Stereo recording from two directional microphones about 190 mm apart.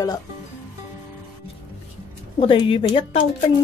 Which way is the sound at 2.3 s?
30° left (ahead or behind).